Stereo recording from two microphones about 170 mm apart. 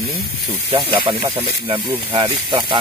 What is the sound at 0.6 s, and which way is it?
Speech, 30° right (ahead or behind).